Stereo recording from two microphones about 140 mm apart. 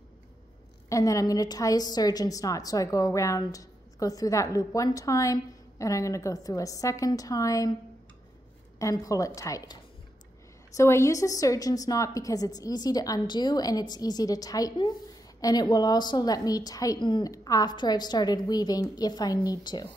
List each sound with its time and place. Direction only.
0.8 s a woman's voice: 25° left (ahead or behind)
8.7 s a woman's voice: 25° left (ahead or behind)
10.8 s a woman's voice: 20° left (ahead or behind)